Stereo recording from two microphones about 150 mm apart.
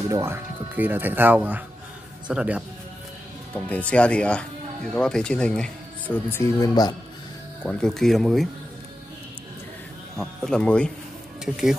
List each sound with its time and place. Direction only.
0.1 s speech: 15° right (ahead or behind)
3.5 s speech: 10° left (ahead or behind); by 7.0 s 25° left (ahead or behind)
7.6 s speech: 5° left (ahead or behind)
10.1 s speech: 5° left (ahead or behind)